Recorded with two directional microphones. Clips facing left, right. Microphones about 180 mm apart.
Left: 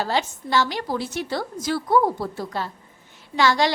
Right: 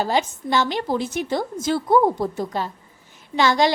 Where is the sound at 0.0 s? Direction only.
15° right (ahead or behind).